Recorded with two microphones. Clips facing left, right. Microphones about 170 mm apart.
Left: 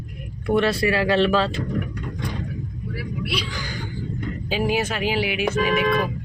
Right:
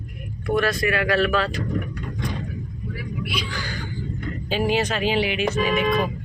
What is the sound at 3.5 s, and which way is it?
Speech, 10° left (ahead or behind).